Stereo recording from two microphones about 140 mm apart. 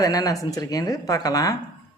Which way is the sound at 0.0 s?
25° left (ahead or behind).